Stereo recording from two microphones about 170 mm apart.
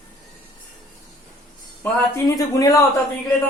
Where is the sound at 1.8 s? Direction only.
15° left (ahead or behind).